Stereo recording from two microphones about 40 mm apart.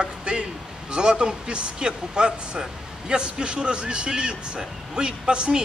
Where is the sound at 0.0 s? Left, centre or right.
Right.